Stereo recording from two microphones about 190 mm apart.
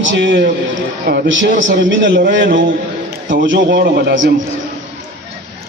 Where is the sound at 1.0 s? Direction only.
50° right (ahead or behind).